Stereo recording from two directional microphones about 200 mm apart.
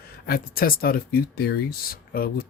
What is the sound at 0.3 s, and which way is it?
Speech, 45° left (ahead or behind).